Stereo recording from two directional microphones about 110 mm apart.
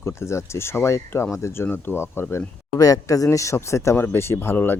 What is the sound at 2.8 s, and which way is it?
Speech, 30° left (ahead or behind).